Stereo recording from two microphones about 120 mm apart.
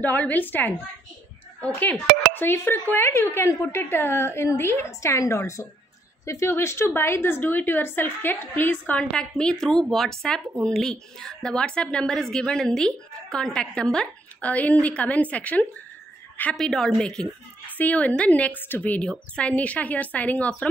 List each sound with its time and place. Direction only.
0.0 s a woman's voice: 15° left (ahead or behind)